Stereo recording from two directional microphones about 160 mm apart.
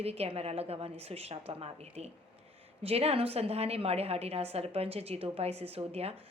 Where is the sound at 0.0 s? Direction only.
40° right (ahead or behind).